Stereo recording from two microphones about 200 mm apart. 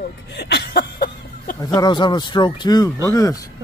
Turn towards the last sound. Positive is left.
turn(degrees=15)  # may be behind; listen again after turning